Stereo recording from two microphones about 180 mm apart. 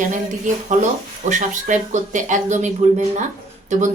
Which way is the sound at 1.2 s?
45° right (ahead or behind).